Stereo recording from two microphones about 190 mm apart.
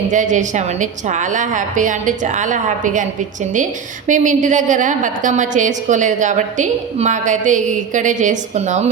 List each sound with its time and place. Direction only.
0.1 s a woman's voice: 40° right (ahead or behind)